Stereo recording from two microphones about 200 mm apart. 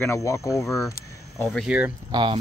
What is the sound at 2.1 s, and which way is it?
Speech, 25° right (ahead or behind).